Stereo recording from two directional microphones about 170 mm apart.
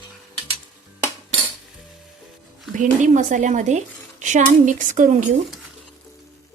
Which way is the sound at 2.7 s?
45° right (ahead or behind).